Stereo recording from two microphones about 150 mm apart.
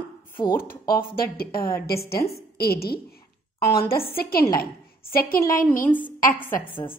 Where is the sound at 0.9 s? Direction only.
85° left.